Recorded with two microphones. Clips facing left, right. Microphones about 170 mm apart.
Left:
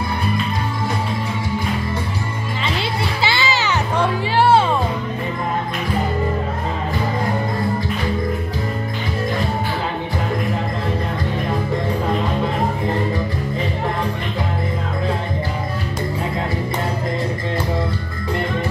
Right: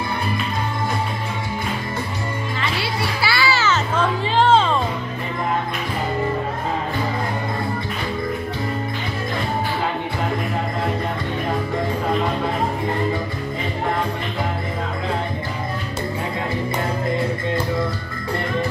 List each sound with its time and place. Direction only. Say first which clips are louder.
2.8 s music: left 2 dB; 20° left (ahead or behind)